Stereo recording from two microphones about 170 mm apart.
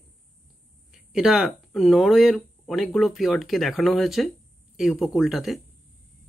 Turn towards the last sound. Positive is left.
turn(degrees=0)  # may be behind; listen again after turning